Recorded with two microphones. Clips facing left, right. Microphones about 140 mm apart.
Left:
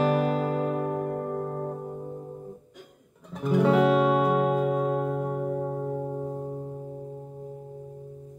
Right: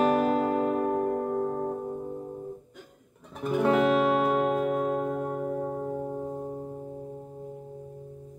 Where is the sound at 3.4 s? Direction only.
Centre (ahead or behind).